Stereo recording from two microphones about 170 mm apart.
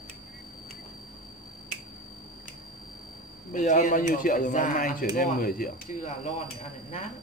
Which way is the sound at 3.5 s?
50° left (ahead or behind).